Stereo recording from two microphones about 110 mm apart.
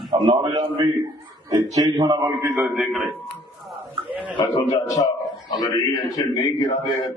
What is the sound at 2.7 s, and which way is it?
Speech, centre (ahead or behind).